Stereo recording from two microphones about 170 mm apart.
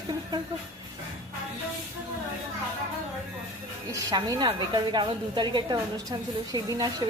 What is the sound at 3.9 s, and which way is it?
A woman's voice, 20° right (ahead or behind).